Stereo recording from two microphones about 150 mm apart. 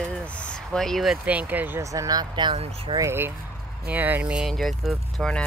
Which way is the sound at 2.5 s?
45° right (ahead or behind).